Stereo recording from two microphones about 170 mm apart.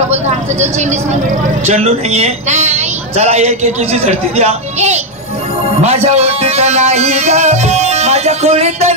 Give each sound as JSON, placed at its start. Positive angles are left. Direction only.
{"t": 1.7, "sound": "a man's voice", "side_deg": -40}